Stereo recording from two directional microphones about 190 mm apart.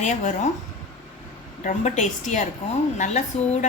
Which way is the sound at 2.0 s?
40° left (ahead or behind).